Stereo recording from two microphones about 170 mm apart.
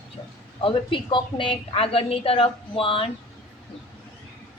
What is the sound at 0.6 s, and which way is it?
A woman's voice, 30° left (ahead or behind).